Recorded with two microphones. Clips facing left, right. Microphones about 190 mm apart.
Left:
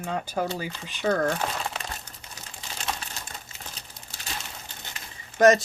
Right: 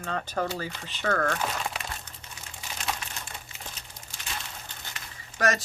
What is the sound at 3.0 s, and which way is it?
Crumpling, 35° left (ahead or behind).